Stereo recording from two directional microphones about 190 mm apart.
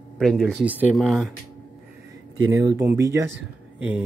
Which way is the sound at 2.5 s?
15° right (ahead or behind).